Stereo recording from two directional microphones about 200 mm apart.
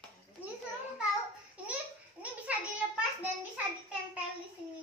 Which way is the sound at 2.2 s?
5° right (ahead or behind).